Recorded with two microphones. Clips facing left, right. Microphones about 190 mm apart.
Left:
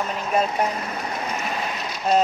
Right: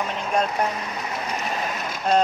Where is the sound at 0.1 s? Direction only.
5° left (ahead or behind).